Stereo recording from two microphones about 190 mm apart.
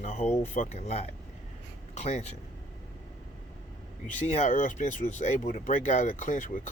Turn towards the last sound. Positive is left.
turn(degrees=45)  # may be behind; listen again after turning